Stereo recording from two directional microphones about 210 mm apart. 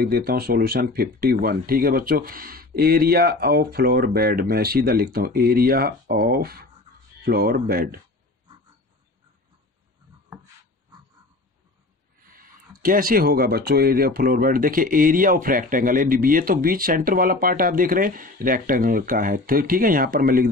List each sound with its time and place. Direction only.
0.0 s speech: 45° right (ahead or behind)
12.8 s speech: 40° right (ahead or behind)